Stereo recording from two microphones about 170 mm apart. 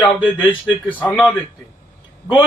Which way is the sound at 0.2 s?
10° right (ahead or behind).